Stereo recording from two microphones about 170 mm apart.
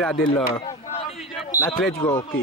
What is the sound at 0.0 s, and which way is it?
Speech, 5° left (ahead or behind).